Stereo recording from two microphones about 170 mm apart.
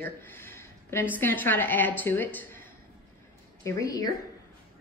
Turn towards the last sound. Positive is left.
turn(degrees=20)  # may be behind; listen again after turning